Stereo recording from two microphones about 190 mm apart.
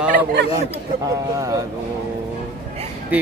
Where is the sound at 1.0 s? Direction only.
20° right (ahead or behind).